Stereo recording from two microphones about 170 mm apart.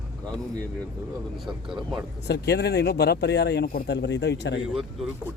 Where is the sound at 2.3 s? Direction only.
75° left (ahead or behind); by 4.6 s 90° left.